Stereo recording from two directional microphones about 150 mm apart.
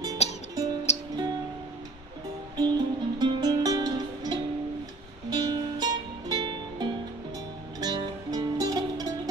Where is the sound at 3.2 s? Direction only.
25° right (ahead or behind).